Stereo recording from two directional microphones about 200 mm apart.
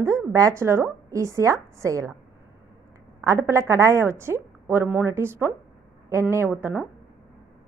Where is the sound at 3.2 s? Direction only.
15° right (ahead or behind).